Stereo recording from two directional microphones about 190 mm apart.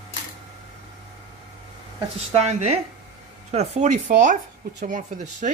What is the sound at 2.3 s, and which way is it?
Speech, 35° right (ahead or behind).